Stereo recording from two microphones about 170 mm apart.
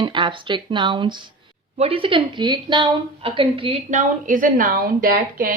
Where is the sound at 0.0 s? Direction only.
30° right (ahead or behind).